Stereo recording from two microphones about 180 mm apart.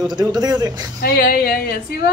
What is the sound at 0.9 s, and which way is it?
Speech, 55° left (ahead or behind).